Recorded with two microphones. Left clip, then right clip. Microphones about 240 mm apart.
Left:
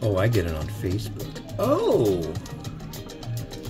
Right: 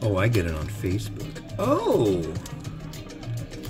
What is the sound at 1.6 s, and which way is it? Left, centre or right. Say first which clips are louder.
Speech: left 1 dB; centre.